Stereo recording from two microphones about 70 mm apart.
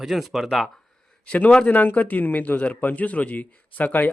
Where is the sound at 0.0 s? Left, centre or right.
Centre.